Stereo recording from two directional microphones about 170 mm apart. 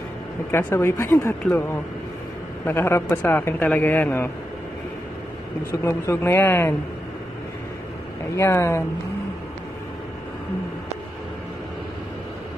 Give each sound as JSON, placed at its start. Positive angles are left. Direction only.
{"t": 0.5, "sound": "speech", "side_deg": 15}
{"t": 2.6, "sound": "speech", "side_deg": 15}
{"t": 5.7, "sound": "speech", "side_deg": 15}
{"t": 8.4, "sound": "speech", "side_deg": 15}